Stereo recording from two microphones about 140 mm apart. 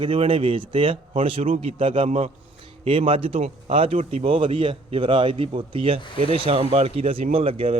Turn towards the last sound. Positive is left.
turn(degrees=-40)  # may be behind; listen again after turning